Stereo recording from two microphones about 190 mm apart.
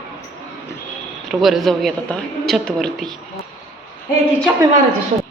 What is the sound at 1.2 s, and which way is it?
A woman's voice, centre (ahead or behind).